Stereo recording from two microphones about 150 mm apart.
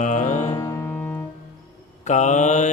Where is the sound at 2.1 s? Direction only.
55° left (ahead or behind).